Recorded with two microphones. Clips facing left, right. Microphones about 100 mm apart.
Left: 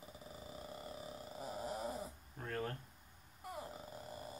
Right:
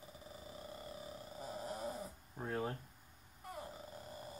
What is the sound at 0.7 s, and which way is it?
Purr, 5° left (ahead or behind).